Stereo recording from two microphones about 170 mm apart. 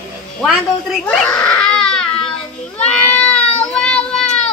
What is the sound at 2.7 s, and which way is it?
Goat, 5° left (ahead or behind).